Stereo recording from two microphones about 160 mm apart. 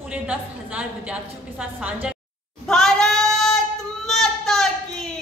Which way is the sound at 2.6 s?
5° left (ahead or behind).